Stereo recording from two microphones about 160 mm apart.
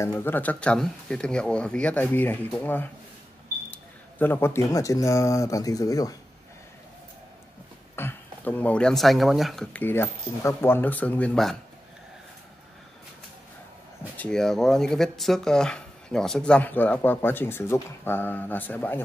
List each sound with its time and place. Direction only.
0.0 s speech: 15° left (ahead or behind)
7.9 s speech: 15° left (ahead or behind)
14.1 s speech: 5° left (ahead or behind)